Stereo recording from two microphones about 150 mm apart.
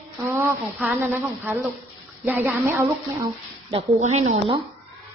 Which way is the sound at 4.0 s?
50° right (ahead or behind).